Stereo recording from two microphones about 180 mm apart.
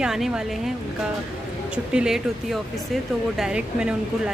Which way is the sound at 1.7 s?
5° right (ahead or behind).